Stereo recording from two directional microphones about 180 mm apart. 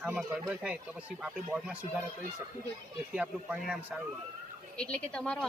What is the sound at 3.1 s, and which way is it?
Speech, 5° right (ahead or behind).